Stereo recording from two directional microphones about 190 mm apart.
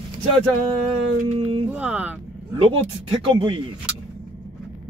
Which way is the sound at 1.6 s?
5° right (ahead or behind).